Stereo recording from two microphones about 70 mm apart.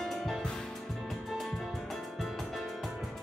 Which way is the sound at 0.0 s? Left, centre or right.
Centre.